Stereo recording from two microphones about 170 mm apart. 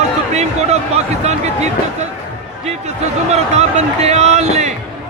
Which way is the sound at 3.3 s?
40° right (ahead or behind).